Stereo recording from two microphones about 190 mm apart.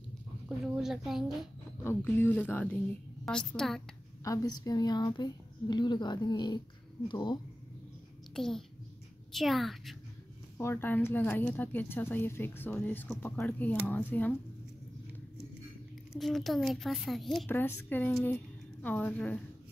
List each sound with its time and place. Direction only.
0.7 s a woman's voice: centre (ahead or behind)
1.8 s a woman's voice: 10° left (ahead or behind)
4.2 s a woman's voice: 15° left (ahead or behind)
8.4 s a woman's voice: centre (ahead or behind)
10.6 s speech: 10° left (ahead or behind)
16.1 s a woman's voice: centre (ahead or behind)